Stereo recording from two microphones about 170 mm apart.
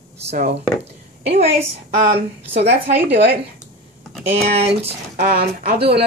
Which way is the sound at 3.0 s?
75° right (ahead or behind).